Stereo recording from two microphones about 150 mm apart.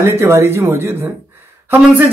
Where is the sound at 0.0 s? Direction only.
15° right (ahead or behind).